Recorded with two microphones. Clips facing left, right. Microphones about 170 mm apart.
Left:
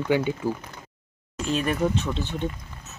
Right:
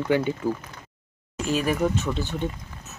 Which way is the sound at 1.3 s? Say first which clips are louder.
Right 1 dB; 5° right (ahead or behind).